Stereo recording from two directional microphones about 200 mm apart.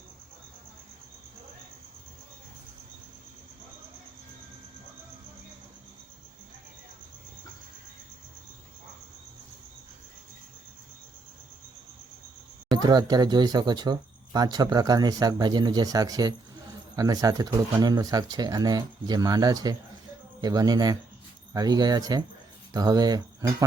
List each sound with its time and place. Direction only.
12.7 s speech: 20° right (ahead or behind)